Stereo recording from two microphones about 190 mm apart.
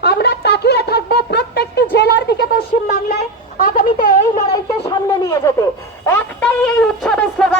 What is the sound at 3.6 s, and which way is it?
Speech, 50° left (ahead or behind).